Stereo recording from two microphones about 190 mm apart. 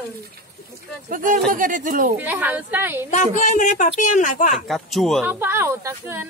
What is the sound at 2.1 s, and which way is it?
Speech, 10° right (ahead or behind).